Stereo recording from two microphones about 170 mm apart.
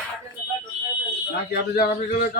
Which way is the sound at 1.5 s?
65° left (ahead or behind).